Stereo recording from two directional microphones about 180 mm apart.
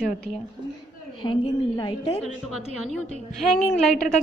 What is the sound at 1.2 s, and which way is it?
A woman's voice, 25° left (ahead or behind).